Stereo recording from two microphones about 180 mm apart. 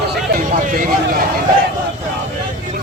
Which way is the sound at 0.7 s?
50° right (ahead or behind).